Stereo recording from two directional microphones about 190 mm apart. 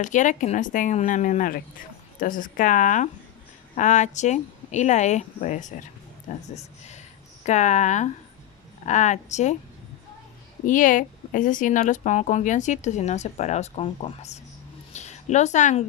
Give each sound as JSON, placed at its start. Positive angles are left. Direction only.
{"t": 0.0, "sound": "speech", "side_deg": 40}
{"t": 10.7, "sound": "speech", "side_deg": 45}
{"t": 14.9, "sound": "a sound", "side_deg": 35}